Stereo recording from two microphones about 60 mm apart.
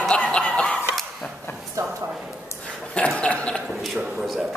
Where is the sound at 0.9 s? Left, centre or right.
Centre.